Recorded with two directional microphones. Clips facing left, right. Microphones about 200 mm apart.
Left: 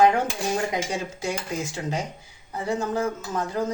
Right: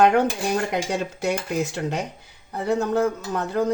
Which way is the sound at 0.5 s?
65° right (ahead or behind).